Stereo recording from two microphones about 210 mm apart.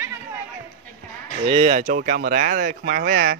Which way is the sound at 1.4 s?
30° right (ahead or behind).